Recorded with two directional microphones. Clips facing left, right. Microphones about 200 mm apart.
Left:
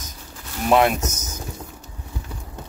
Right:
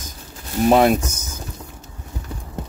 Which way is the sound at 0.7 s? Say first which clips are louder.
Right 3 dB; 35° right (ahead or behind).